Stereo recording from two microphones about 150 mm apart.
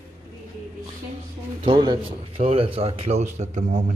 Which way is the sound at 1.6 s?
30° right (ahead or behind).